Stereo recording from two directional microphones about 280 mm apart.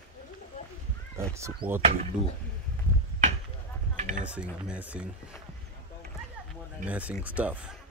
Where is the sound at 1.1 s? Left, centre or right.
Centre.